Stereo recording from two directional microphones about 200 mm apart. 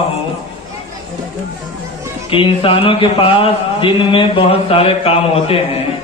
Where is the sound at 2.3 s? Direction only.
25° left (ahead or behind).